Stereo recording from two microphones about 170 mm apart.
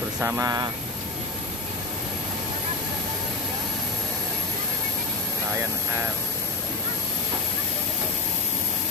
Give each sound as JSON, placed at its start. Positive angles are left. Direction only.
{"t": 0.2, "sound": "speech", "side_deg": -15}